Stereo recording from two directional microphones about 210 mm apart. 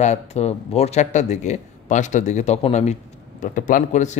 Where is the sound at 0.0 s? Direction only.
30° left (ahead or behind).